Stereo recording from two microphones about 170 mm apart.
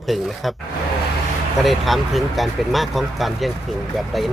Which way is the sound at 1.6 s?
Centre (ahead or behind).